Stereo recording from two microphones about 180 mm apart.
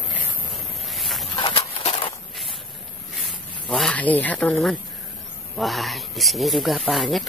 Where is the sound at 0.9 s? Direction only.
Centre (ahead or behind).